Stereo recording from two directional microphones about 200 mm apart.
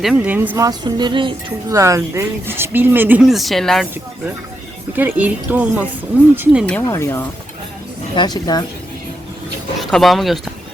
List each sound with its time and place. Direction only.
0.0 s speech: 5° right (ahead or behind)
4.9 s speech: 10° right (ahead or behind)
6.8 s speech: 15° left (ahead or behind)
9.8 s speech: centre (ahead or behind)